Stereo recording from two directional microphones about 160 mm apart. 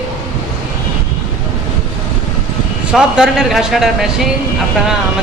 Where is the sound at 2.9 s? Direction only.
5° right (ahead or behind).